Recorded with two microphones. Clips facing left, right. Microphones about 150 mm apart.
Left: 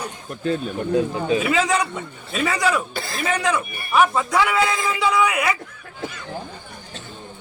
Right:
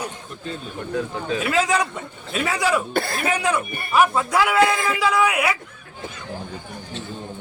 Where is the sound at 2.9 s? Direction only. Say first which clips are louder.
Right 3 dB; 55° right (ahead or behind).